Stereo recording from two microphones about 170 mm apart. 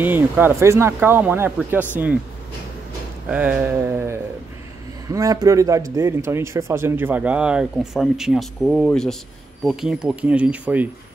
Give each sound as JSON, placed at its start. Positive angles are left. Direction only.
{"t": 0.0, "sound": "speech", "side_deg": -10}
{"t": 3.3, "sound": "speech", "side_deg": -5}